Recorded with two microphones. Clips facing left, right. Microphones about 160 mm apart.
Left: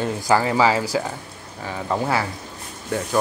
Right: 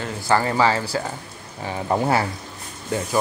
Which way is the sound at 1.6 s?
25° right (ahead or behind).